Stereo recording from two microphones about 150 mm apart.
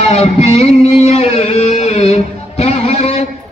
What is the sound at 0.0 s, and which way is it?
Music, 45° left (ahead or behind).